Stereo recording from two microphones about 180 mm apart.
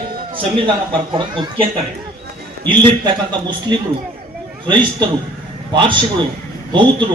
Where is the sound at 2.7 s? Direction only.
25° right (ahead or behind).